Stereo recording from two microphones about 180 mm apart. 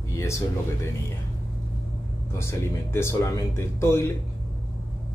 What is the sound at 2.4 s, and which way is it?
Speech, 15° left (ahead or behind).